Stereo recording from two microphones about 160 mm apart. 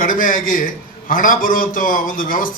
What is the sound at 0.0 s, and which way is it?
A man's voice, 60° left (ahead or behind).